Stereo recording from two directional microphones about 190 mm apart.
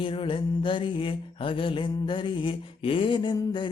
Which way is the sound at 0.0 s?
30° left (ahead or behind).